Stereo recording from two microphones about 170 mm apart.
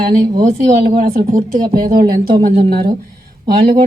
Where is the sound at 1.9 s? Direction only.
60° right (ahead or behind).